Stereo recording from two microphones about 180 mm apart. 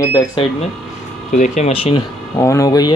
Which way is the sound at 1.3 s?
40° left (ahead or behind).